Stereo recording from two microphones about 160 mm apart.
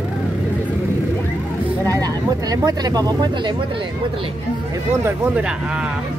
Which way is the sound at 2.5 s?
25° right (ahead or behind).